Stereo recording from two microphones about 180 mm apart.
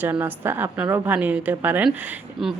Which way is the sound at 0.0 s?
10° right (ahead or behind).